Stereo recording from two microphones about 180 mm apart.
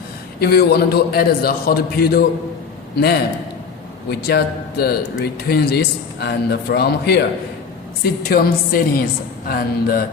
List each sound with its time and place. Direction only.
0.3 s a man's voice: 60° left (ahead or behind)